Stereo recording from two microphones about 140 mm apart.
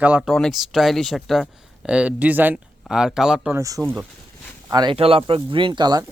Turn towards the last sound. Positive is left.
turn(degrees=-30)  # may be behind; listen again after turning